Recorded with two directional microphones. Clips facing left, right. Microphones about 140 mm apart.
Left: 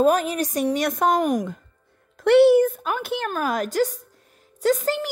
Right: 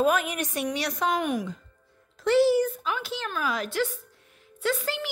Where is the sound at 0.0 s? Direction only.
35° left (ahead or behind).